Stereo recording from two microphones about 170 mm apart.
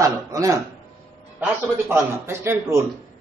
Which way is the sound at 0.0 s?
20° right (ahead or behind).